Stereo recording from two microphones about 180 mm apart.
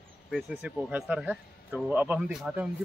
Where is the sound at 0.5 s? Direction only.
10° right (ahead or behind).